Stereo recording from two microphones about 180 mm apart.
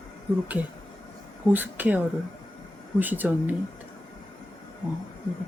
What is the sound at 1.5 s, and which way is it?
Speech, 10° right (ahead or behind).